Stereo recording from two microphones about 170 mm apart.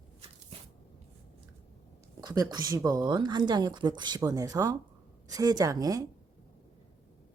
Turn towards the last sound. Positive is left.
turn(degrees=-20)  # may be behind; listen again after turning